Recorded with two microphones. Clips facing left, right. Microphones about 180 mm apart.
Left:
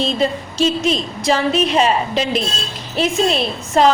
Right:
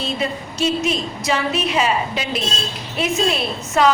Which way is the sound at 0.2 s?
35° left (ahead or behind).